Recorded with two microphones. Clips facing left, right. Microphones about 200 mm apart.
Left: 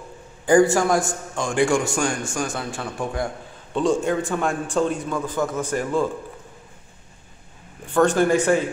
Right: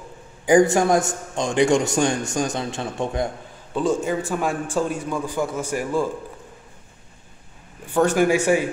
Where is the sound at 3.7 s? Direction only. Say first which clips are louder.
Left 1 dB; 5° right (ahead or behind).